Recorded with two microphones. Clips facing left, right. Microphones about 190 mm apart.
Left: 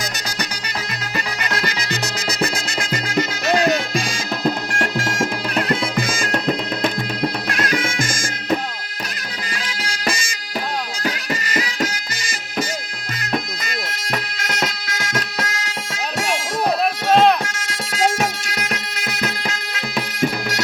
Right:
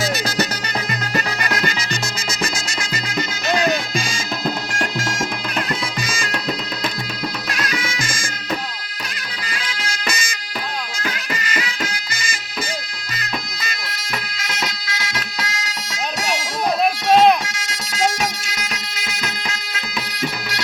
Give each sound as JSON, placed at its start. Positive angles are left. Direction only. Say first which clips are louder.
{"t": 1.9, "sound": "music", "louder": "left 2 dB", "side_deg": 60}
{"t": 5.6, "sound": "music", "louder": "left 5 dB", "side_deg": 55}
{"t": 7.5, "sound": "music", "louder": "left 4 dB", "side_deg": 50}
{"t": 9.9, "sound": "music", "louder": "left 4 dB", "side_deg": 30}
{"t": 13.3, "sound": "bagpipes", "louder": "left 6 dB", "side_deg": 50}
{"t": 17.4, "sound": "music", "louder": "left 3 dB", "side_deg": 55}